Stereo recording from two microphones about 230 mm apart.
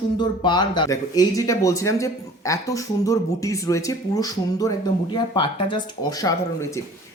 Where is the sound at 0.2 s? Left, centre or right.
Centre.